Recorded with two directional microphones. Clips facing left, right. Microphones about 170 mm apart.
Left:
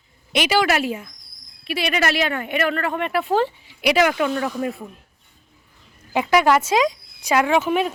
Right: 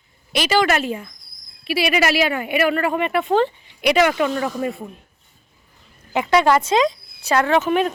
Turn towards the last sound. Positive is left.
turn(degrees=5)  # may be behind; listen again after turning